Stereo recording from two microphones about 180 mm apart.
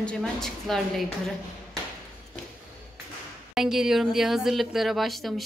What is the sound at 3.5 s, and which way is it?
Speech, 5° right (ahead or behind).